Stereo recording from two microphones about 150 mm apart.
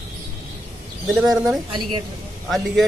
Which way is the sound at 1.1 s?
Centre (ahead or behind).